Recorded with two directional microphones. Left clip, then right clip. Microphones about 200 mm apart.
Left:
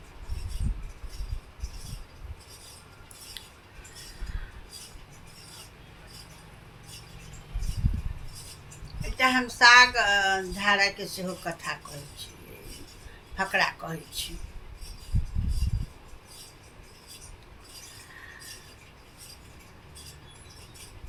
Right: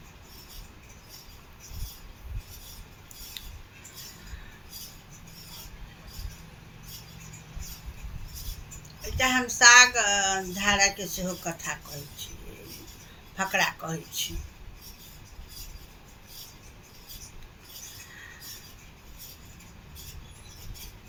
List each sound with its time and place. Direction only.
9.0 s a sound: 5° left (ahead or behind)
9.6 s a woman's voice: 5° left (ahead or behind)
13.3 s a woman's voice: 5° left (ahead or behind)